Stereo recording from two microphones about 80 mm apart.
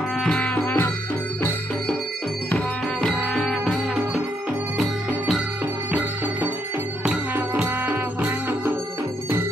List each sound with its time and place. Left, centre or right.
0.4 s music: centre
2.5 s music: centre